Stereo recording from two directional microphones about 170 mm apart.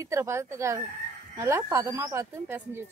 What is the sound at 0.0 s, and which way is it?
Speech, 15° right (ahead or behind).